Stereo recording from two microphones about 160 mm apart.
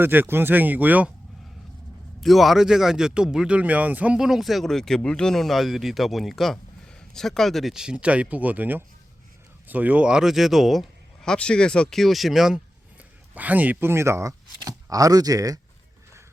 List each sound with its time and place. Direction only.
0.0 s speech: 15° right (ahead or behind)
2.2 s speech: centre (ahead or behind); by 15.6 s 20° right (ahead or behind)